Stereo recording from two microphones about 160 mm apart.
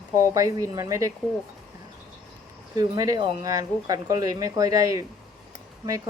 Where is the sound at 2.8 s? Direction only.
25° right (ahead or behind).